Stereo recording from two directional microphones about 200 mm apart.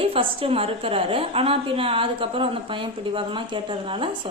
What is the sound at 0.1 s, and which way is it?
A woman's voice, 25° right (ahead or behind).